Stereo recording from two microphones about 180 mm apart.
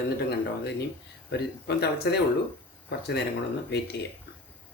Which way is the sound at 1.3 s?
70° left (ahead or behind).